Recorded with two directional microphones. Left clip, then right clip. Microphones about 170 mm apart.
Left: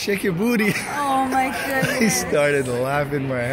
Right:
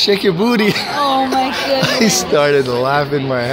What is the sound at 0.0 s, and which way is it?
Speech, 40° right (ahead or behind).